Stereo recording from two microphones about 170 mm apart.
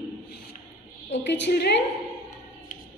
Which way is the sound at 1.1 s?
90° left.